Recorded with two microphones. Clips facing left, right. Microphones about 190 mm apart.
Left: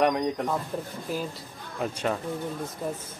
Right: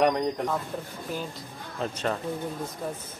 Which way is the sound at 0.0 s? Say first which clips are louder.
Even; 5° left (ahead or behind).